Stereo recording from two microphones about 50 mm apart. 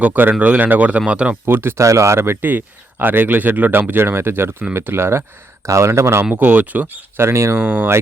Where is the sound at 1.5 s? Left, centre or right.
Right.